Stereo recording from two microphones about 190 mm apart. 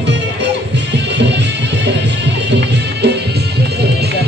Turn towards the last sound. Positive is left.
turn(degrees=-65)  # may be behind; listen again after turning